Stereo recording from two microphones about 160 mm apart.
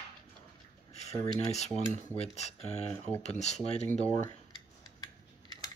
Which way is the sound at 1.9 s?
10° left (ahead or behind).